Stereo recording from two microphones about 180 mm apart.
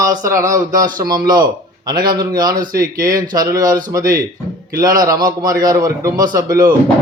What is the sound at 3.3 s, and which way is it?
A man's voice, 20° right (ahead or behind).